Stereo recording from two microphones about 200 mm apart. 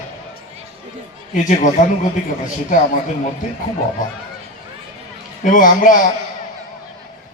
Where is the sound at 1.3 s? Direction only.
40° left (ahead or behind).